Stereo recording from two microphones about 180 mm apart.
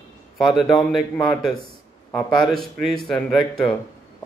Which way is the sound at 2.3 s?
Centre (ahead or behind).